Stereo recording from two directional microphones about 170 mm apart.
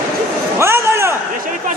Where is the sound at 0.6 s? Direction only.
15° right (ahead or behind).